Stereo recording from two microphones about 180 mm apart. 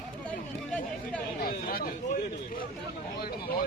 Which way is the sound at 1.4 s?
50° left (ahead or behind).